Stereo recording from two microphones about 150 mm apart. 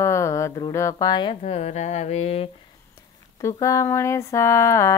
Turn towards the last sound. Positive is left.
turn(degrees=20)  # may be behind; listen again after turning